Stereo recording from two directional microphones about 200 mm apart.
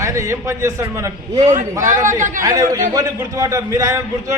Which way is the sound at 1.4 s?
35° right (ahead or behind).